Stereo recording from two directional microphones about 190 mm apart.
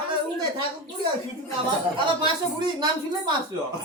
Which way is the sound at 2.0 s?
25° right (ahead or behind).